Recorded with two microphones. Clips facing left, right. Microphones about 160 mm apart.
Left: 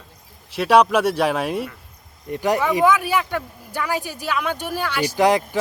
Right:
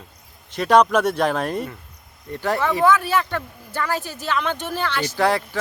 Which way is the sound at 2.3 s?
15° left (ahead or behind).